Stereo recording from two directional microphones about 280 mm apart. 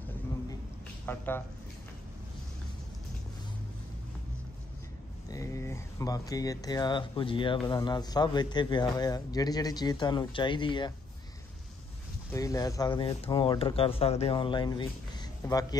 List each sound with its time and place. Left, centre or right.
1.0 s speech: centre
5.3 s speech: centre
12.3 s speech: centre